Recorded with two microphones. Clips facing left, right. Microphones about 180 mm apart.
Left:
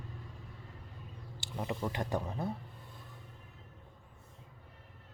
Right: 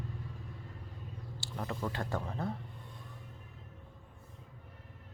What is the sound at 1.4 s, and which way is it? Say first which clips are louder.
Speech: left 1 dB; 15° left (ahead or behind).